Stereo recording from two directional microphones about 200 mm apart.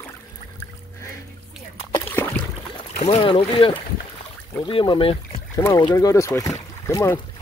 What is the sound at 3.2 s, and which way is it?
Speech, 25° left (ahead or behind).